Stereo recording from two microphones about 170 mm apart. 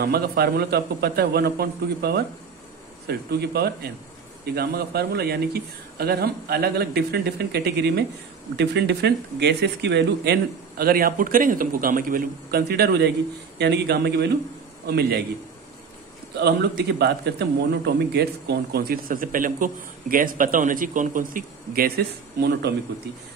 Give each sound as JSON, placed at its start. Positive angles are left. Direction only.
{"t": 0.0, "sound": "speech", "side_deg": -70}
{"t": 16.3, "sound": "a man's voice", "side_deg": -80}